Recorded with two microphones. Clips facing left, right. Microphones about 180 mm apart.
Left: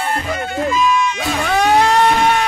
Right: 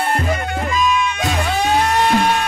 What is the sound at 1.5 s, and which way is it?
Music, 65° left (ahead or behind).